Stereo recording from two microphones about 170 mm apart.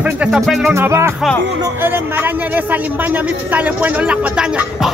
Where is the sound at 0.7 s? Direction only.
15° right (ahead or behind).